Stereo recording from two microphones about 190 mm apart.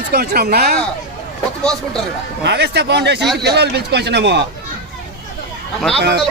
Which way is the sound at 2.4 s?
65° right (ahead or behind).